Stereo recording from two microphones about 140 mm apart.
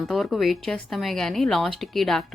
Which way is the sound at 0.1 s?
Centre (ahead or behind).